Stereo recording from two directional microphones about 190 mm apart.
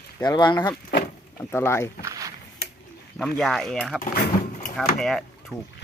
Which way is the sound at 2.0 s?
20° right (ahead or behind).